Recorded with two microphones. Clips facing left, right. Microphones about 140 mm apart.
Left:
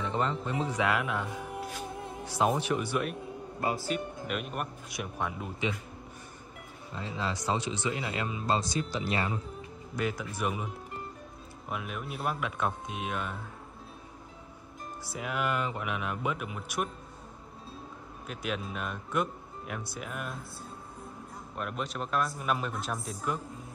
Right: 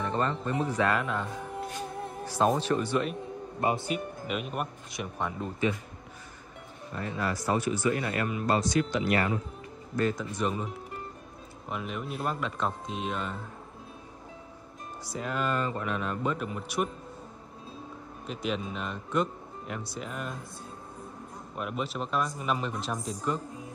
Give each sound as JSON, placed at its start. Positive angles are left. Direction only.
{"t": 0.0, "sound": "speech", "side_deg": 15}
{"t": 3.6, "sound": "speech", "side_deg": -25}
{"t": 3.9, "sound": "a man's voice", "side_deg": 0}
{"t": 7.2, "sound": "speech", "side_deg": 20}
{"t": 9.9, "sound": "speech", "side_deg": 10}
{"t": 11.7, "sound": "a man's voice", "side_deg": 0}
{"t": 15.0, "sound": "a man's voice", "side_deg": 10}
{"t": 18.2, "sound": "a man's voice", "side_deg": 5}
{"t": 21.5, "sound": "a man's voice", "side_deg": -5}